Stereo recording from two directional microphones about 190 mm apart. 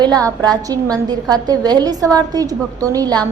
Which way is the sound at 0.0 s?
20° right (ahead or behind).